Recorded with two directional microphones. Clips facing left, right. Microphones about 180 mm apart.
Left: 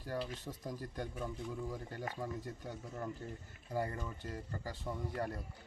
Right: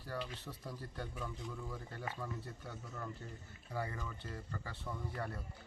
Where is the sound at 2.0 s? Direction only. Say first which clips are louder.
Left 2 dB; 40° left (ahead or behind).